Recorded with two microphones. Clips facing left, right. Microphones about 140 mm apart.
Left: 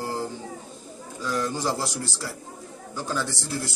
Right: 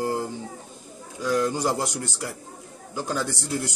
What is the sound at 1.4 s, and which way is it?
Speech, 15° right (ahead or behind).